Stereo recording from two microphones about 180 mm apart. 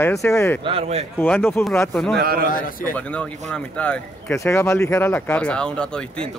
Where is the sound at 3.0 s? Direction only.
5° left (ahead or behind).